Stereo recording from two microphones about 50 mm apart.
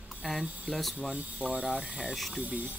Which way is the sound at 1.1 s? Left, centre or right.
Right.